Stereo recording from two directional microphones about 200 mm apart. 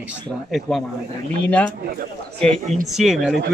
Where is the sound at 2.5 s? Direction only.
35° right (ahead or behind).